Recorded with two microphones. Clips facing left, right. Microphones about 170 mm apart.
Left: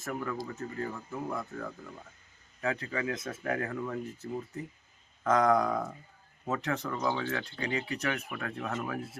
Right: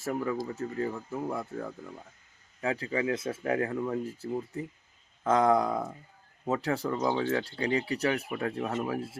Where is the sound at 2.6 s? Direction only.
30° right (ahead or behind).